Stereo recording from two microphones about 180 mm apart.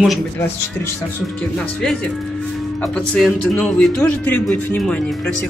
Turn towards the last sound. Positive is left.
turn(degrees=5)  # may be behind; listen again after turning